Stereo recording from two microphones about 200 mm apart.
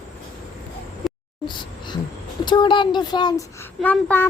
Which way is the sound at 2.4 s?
25° left (ahead or behind).